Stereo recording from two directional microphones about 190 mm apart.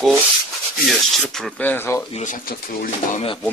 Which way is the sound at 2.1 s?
45° left (ahead or behind).